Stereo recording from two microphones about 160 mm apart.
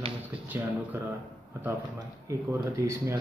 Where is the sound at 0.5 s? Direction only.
15° right (ahead or behind).